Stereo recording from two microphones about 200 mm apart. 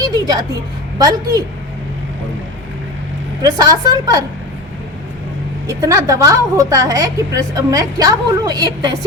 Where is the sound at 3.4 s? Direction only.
20° right (ahead or behind).